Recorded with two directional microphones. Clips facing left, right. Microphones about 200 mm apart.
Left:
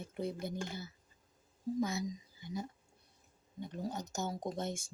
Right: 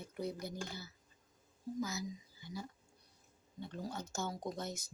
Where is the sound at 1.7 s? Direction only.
30° left (ahead or behind).